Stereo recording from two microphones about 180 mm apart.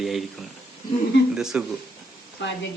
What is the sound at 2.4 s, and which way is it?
Speech, 75° left (ahead or behind).